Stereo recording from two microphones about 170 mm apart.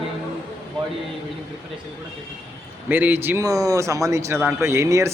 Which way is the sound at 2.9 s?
10° right (ahead or behind).